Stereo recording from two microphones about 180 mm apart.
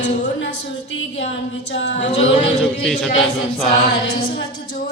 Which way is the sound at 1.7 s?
85° left.